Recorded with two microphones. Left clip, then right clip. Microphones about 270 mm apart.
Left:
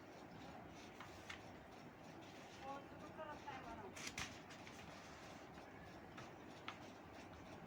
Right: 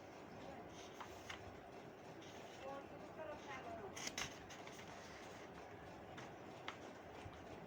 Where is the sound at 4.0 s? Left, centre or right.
Centre.